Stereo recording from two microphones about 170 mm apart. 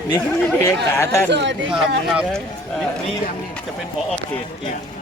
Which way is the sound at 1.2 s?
90° right.